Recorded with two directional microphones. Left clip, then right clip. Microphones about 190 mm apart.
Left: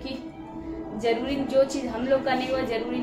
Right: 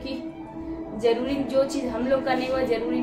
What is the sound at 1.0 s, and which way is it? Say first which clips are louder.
A woman's voice: right 3 dB; 10° right (ahead or behind).